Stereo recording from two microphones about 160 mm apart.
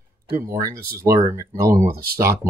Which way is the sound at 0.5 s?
20° right (ahead or behind).